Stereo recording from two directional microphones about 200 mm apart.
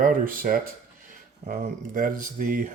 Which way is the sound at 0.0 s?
45° right (ahead or behind).